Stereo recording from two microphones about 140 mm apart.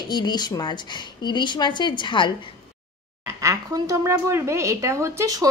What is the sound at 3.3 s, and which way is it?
A woman's voice, 25° right (ahead or behind).